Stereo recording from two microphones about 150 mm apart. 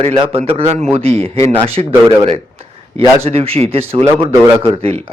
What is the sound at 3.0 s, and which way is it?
A man's voice, 40° right (ahead or behind).